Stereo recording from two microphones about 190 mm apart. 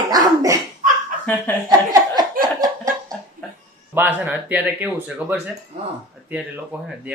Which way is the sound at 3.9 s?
10° right (ahead or behind).